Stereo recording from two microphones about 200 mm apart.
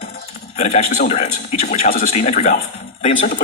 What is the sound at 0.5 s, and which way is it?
A man's voice, 35° left (ahead or behind).